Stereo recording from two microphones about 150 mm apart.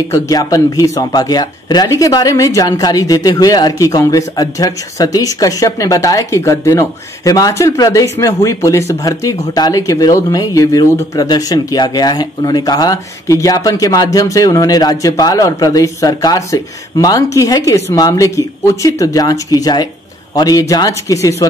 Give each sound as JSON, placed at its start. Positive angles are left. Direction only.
{"t": 0.1, "sound": "speech", "side_deg": 25}